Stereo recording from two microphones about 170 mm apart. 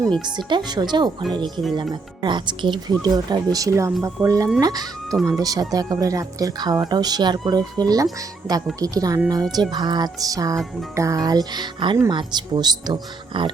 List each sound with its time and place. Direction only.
0.2 s speech: 25° right (ahead or behind)